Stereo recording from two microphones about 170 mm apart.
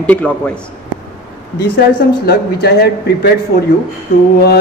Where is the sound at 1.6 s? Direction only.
70° left (ahead or behind).